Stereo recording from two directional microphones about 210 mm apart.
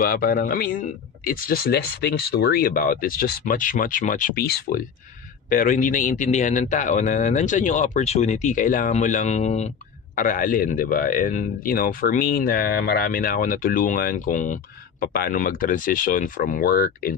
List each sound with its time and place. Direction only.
0.0 s speech: 45° left (ahead or behind)